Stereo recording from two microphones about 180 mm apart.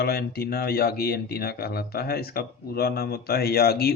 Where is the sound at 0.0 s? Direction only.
60° left (ahead or behind).